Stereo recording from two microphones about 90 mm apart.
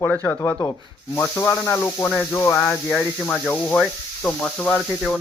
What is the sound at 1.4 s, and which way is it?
Speech, 30° left (ahead or behind).